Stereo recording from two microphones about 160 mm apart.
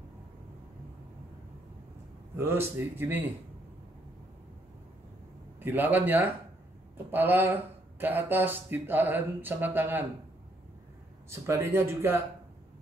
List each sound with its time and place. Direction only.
2.3 s speech: 15° right (ahead or behind)
5.6 s speech: 10° right (ahead or behind)
11.2 s speech: 15° right (ahead or behind)